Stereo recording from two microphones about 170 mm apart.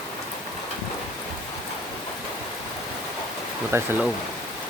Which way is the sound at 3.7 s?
15° right (ahead or behind).